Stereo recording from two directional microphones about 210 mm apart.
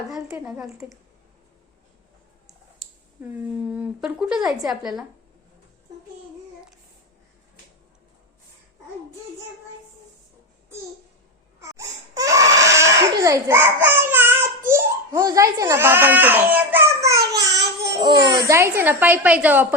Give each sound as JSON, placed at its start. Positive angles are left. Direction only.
{"t": 0.1, "sound": "speech", "side_deg": -5}
{"t": 2.5, "sound": "speech", "side_deg": -5}
{"t": 11.6, "sound": "crying", "side_deg": -15}
{"t": 14.7, "sound": "a child's voice", "side_deg": -10}